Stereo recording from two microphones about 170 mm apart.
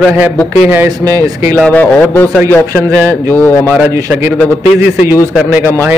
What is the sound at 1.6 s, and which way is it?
Speech, 10° left (ahead or behind).